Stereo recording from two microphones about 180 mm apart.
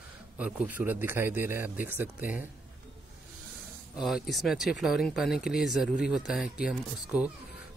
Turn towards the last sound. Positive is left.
turn(degrees=-5)  # may be behind; listen again after turning